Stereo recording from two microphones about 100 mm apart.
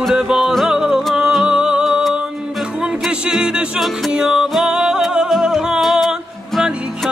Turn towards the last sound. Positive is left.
turn(degrees=0)  # may be behind; listen again after turning